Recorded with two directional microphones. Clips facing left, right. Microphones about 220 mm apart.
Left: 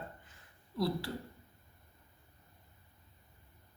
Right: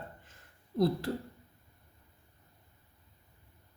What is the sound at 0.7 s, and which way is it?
Speech, 45° right (ahead or behind).